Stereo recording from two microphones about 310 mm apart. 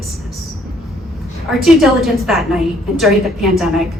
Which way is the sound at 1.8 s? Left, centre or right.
Centre.